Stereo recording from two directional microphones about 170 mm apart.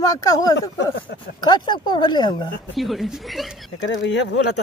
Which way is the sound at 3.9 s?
90° left.